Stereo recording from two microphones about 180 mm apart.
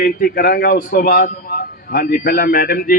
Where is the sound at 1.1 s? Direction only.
45° left (ahead or behind).